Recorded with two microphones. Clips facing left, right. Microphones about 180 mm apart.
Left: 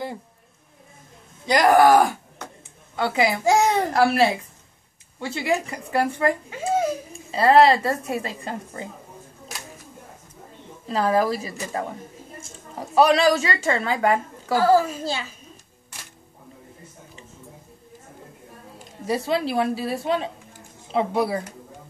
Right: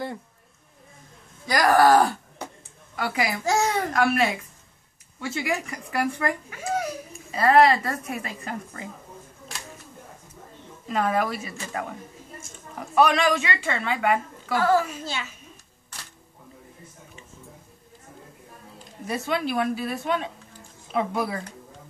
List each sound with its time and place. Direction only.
1.4 s a child's voice: 20° left (ahead or behind)
10.9 s a woman's voice: 35° left (ahead or behind)
19.0 s a woman's voice: 30° left (ahead or behind)